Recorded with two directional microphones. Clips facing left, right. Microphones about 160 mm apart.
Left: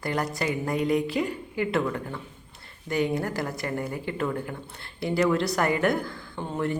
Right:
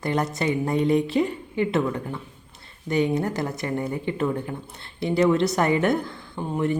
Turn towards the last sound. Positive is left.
turn(degrees=-15)  # may be behind; listen again after turning